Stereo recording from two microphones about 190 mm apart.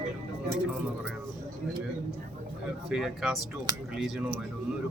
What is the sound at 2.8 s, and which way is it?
Speech, centre (ahead or behind).